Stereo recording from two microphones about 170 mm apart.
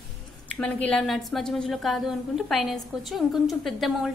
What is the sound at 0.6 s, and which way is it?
A woman's voice, 5° left (ahead or behind).